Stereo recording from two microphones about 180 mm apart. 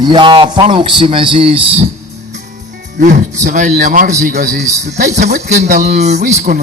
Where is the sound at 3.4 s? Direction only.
45° right (ahead or behind).